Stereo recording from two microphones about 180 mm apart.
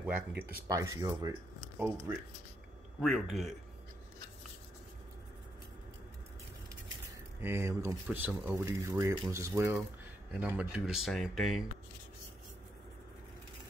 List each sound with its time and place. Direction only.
0.0 s speech: 10° right (ahead or behind)
3.0 s speech: centre (ahead or behind)
7.3 s speech: 10° right (ahead or behind)